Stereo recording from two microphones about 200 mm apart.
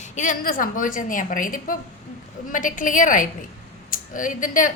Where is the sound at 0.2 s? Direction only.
40° left (ahead or behind).